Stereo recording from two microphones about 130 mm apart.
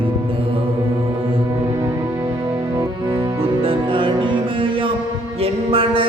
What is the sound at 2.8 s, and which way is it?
Music, 20° right (ahead or behind).